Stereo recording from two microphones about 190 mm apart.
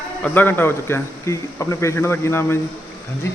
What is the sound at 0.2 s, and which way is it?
A man's voice, 10° left (ahead or behind).